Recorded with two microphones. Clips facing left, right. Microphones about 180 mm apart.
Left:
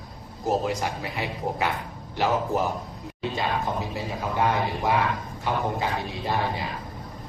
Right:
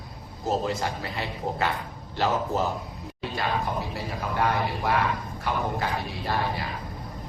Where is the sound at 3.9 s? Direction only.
15° left (ahead or behind).